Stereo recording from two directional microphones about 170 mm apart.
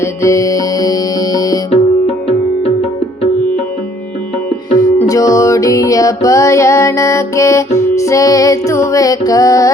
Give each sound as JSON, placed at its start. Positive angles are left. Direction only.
{"t": 0.0, "sound": "music", "side_deg": 15}
{"t": 1.7, "sound": "music", "side_deg": 35}
{"t": 4.9, "sound": "music", "side_deg": 20}